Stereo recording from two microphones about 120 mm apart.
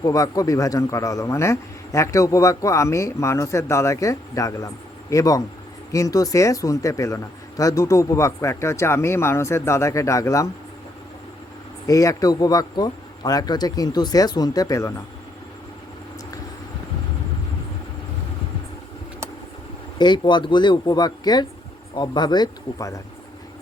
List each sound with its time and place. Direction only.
0.0 s a man's voice: 30° left (ahead or behind)
11.9 s speech: 30° left (ahead or behind)
20.0 s speech: 40° left (ahead or behind)